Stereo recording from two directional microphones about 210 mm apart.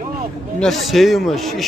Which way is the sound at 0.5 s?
Centre (ahead or behind).